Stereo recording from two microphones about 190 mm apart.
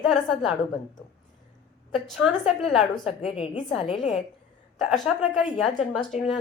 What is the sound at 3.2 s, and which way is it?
Speech, 30° left (ahead or behind).